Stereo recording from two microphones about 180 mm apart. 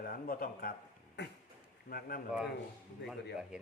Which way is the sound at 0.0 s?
55° left (ahead or behind).